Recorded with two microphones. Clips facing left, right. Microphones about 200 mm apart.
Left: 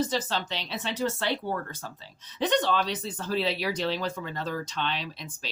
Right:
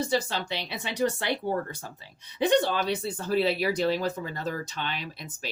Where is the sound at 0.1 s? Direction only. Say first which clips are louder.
Right 2 dB; 10° right (ahead or behind).